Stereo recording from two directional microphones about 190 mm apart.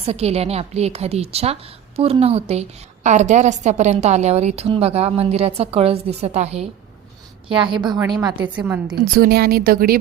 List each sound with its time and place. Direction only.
0.0 s a woman's voice: 35° right (ahead or behind)
9.1 s speech: 55° right (ahead or behind)